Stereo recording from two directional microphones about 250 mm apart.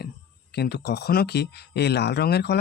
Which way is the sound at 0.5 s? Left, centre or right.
Left.